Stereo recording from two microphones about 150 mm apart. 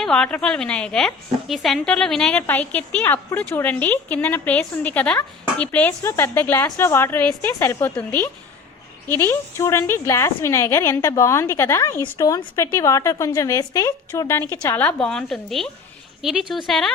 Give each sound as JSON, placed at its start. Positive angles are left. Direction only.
{"t": 0.0, "sound": "a woman's voice", "side_deg": 5}
{"t": 9.0, "sound": "a woman's voice", "side_deg": 15}